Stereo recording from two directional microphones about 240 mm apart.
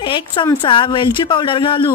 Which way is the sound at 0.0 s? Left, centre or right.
Centre.